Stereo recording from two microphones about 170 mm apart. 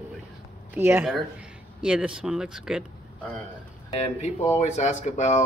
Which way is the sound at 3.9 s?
35° left (ahead or behind).